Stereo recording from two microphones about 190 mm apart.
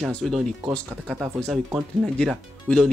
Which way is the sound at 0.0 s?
5° left (ahead or behind).